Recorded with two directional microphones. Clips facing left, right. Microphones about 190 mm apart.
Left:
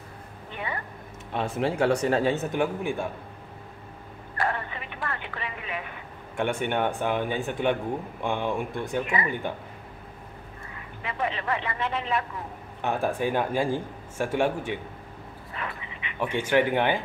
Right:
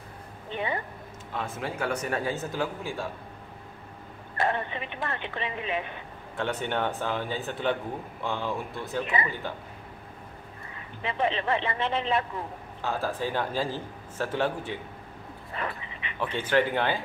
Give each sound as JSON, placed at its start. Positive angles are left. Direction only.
{"t": 0.5, "sound": "a sound", "side_deg": -25}
{"t": 1.3, "sound": "a man's voice", "side_deg": 30}
{"t": 4.4, "sound": "a sound", "side_deg": -20}
{"t": 6.3, "sound": "a man's voice", "side_deg": 15}
{"t": 9.1, "sound": "speech", "side_deg": -25}
{"t": 11.0, "sound": "speech", "side_deg": -25}
{"t": 12.8, "sound": "speech", "side_deg": 20}
{"t": 15.5, "sound": "dog", "side_deg": -35}
{"t": 16.2, "sound": "speech", "side_deg": 15}